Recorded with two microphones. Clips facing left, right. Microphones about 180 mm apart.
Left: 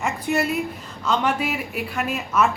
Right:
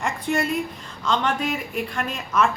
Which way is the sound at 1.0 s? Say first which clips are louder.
Left 1 dB; 10° left (ahead or behind).